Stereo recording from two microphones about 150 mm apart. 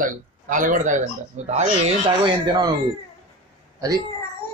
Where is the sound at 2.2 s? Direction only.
30° right (ahead or behind).